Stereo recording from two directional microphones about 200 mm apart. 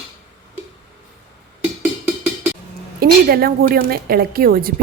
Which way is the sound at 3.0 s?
50° right (ahead or behind).